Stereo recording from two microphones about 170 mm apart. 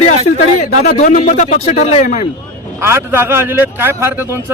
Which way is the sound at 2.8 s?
15° right (ahead or behind).